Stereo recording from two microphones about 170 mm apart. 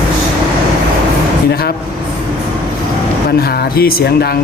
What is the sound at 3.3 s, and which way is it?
Speech, 65° left (ahead or behind).